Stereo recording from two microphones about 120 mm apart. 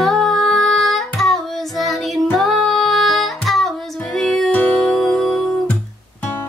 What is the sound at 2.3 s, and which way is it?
Music, centre (ahead or behind).